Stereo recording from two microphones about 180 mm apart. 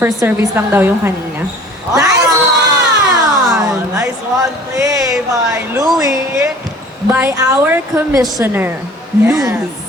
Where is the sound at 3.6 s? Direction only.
15° right (ahead or behind).